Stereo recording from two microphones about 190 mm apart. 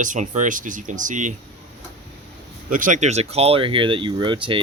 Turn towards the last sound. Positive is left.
turn(degrees=-25)  # may be behind; listen again after turning